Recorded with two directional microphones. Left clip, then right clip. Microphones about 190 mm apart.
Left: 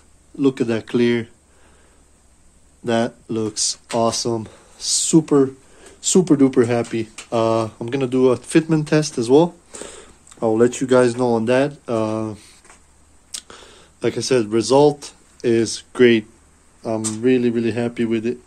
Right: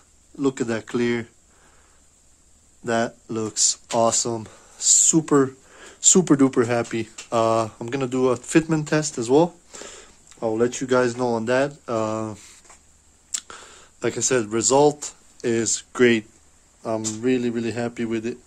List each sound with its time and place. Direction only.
0.4 s speech: centre (ahead or behind)
2.8 s speech: centre (ahead or behind)
5.0 s speech: 20° right (ahead or behind)
6.5 s speech: 5° right (ahead or behind)